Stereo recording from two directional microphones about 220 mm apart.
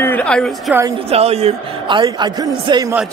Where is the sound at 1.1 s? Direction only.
30° right (ahead or behind).